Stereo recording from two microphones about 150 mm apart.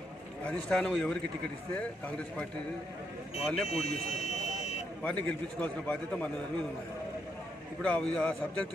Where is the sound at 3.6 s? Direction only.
45° left (ahead or behind).